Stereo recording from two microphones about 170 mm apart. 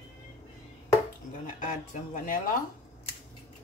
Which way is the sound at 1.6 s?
55° left (ahead or behind).